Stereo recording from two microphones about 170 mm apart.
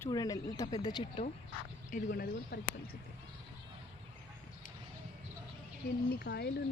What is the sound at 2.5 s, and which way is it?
Speech, 75° left (ahead or behind).